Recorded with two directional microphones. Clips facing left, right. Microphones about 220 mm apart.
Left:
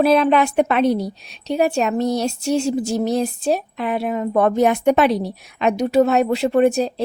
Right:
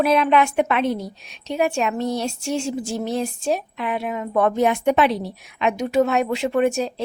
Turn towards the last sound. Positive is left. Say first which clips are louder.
# left 4 dB
turn(degrees=35)  # may be behind; listen again after turning